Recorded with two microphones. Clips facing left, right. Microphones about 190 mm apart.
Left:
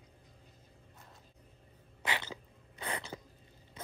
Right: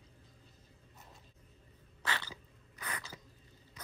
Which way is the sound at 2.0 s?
20° left (ahead or behind).